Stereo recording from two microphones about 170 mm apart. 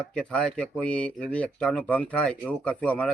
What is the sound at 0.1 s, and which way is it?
Speech, 5° left (ahead or behind).